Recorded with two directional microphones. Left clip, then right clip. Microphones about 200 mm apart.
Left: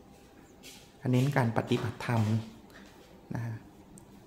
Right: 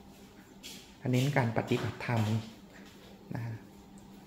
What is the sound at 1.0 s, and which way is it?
Speech, 25° left (ahead or behind).